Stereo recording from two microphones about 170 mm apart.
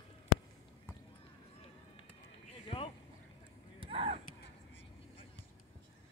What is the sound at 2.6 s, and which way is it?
Boat, 35° left (ahead or behind).